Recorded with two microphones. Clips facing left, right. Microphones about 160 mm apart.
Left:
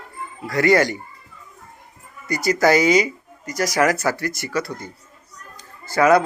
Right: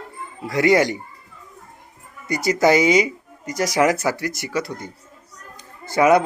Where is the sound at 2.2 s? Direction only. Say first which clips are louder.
Even; 20° right (ahead or behind).